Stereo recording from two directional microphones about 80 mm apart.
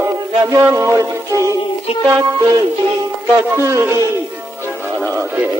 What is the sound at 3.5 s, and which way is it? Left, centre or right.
Music, right.